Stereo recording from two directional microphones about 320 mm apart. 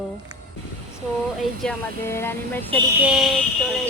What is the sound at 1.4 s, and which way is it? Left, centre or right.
Speech, centre.